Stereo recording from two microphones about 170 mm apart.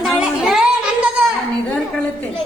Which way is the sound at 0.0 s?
Centre (ahead or behind).